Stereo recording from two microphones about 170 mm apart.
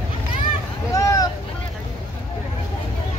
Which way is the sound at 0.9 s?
20° left (ahead or behind).